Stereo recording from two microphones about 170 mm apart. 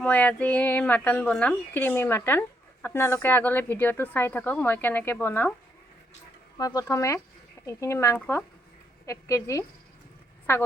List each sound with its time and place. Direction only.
0.0 s speech: 10° left (ahead or behind)
6.6 s speech: 20° left (ahead or behind)